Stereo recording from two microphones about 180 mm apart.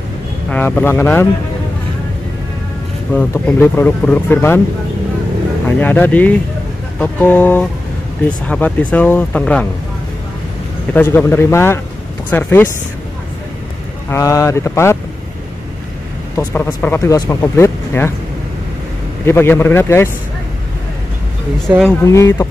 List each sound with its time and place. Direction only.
0.5 s speech: 10° left (ahead or behind)
3.1 s speech: 5° left (ahead or behind)
5.8 s speech: 10° left (ahead or behind)
10.9 s speech: 10° left (ahead or behind)
14.1 s speech: 15° left (ahead or behind)
16.3 s speech: 10° left (ahead or behind)
19.2 s speech: 10° left (ahead or behind)
21.5 s speech: 5° left (ahead or behind)
22.1 s speech: 15° left (ahead or behind)